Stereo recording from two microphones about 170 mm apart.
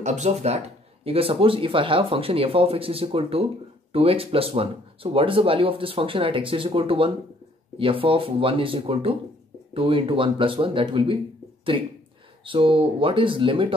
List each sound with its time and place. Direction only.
0.0 s speech: 45° right (ahead or behind)